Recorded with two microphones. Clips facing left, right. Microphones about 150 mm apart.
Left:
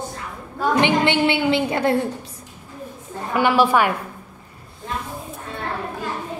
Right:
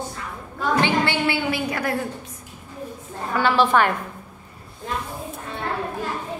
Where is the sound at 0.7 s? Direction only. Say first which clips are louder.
Left 3 dB; 20° left (ahead or behind).